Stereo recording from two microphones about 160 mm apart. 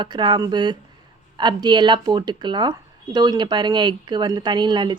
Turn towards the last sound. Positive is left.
turn(degrees=-30)  # may be behind; listen again after turning